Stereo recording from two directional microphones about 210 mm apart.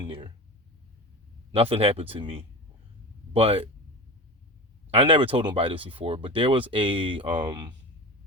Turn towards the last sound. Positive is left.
turn(degrees=-20)  # may be behind; listen again after turning